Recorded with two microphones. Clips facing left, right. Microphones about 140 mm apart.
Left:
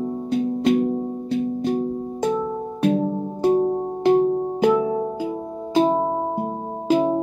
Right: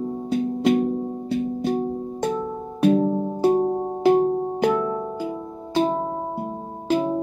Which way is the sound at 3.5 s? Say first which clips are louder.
Left 1 dB; 15° right (ahead or behind).